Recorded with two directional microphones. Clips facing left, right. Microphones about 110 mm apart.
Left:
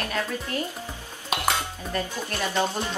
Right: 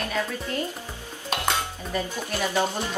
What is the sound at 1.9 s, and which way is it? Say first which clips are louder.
Speech: right 1 dB; 5° right (ahead or behind).